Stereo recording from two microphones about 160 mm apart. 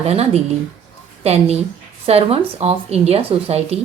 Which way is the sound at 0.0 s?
40° right (ahead or behind).